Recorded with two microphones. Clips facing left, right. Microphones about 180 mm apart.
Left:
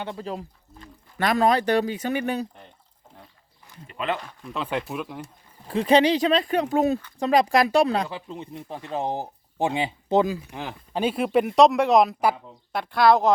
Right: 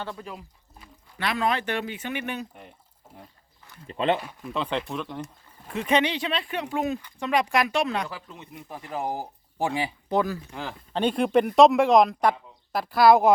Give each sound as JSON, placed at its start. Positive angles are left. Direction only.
{"t": 0.0, "sound": "speech", "side_deg": 20}
{"t": 1.2, "sound": "speech", "side_deg": 40}
{"t": 3.8, "sound": "speech", "side_deg": -30}
{"t": 4.2, "sound": "speech", "side_deg": -10}
{"t": 4.5, "sound": "speech", "side_deg": 5}
{"t": 5.2, "sound": "speech", "side_deg": 30}
{"t": 11.0, "sound": "speech", "side_deg": 5}